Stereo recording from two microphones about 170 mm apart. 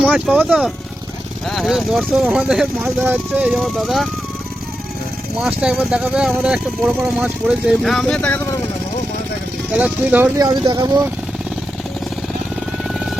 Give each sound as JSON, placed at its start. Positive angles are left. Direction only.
{"t": 0.0, "sound": "speech", "side_deg": -5}
{"t": 5.4, "sound": "speech", "side_deg": -5}
{"t": 9.7, "sound": "speech", "side_deg": -10}
{"t": 10.3, "sound": "speech", "side_deg": -20}